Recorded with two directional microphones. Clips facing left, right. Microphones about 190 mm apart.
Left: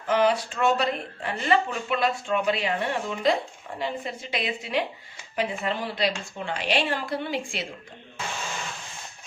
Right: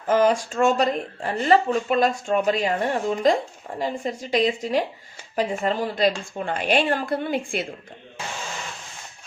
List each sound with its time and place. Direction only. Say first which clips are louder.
0.1 s a woman's voice: right 3 dB; 45° right (ahead or behind)